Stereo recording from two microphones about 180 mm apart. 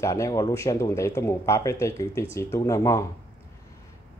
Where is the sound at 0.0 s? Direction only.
20° left (ahead or behind).